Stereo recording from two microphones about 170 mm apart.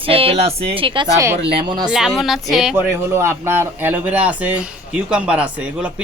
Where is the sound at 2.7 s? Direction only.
15° right (ahead or behind).